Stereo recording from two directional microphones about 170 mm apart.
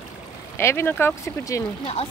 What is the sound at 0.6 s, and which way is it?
Speech, 15° left (ahead or behind).